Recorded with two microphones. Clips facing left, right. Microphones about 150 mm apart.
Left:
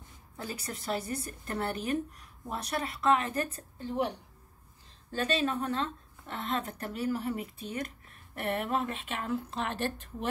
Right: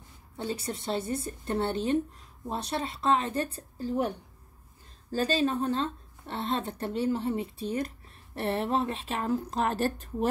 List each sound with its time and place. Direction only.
0.4 s a woman's voice: 25° right (ahead or behind)
5.1 s a woman's voice: 35° right (ahead or behind)